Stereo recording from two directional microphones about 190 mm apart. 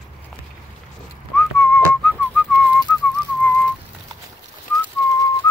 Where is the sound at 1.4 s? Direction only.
10° left (ahead or behind).